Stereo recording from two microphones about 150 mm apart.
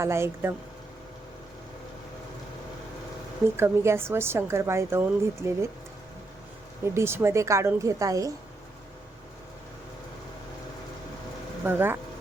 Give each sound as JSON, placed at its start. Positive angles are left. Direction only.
{"t": 0.0, "sound": "a woman's voice", "side_deg": -15}
{"t": 3.6, "sound": "a woman's voice", "side_deg": -15}
{"t": 6.8, "sound": "a woman's voice", "side_deg": -15}
{"t": 11.6, "sound": "a woman's voice", "side_deg": -15}